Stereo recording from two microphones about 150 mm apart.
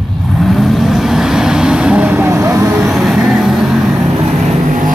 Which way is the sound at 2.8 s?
Centre (ahead or behind).